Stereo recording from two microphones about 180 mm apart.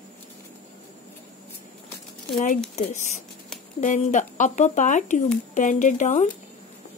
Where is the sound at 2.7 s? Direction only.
40° left (ahead or behind).